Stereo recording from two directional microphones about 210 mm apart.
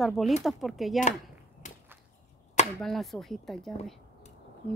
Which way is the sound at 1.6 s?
35° left (ahead or behind).